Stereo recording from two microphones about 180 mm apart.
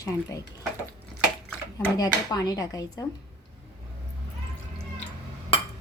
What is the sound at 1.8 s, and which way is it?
Speech, 20° left (ahead or behind).